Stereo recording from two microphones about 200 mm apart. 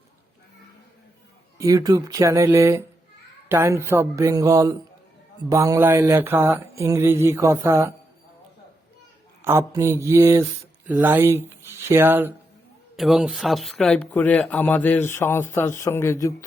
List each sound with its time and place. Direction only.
1.5 s mantra: 15° right (ahead or behind)
9.4 s mantra: 15° right (ahead or behind)
13.0 s speech: centre (ahead or behind); by 16.3 s 15° left (ahead or behind)